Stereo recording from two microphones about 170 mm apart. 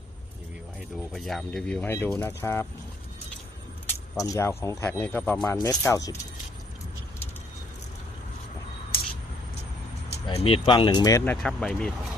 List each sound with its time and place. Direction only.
0.9 s speech: centre (ahead or behind)
3.8 s speech: 15° left (ahead or behind)
10.2 s speech: 35° left (ahead or behind)
11.3 s speech: 5° left (ahead or behind)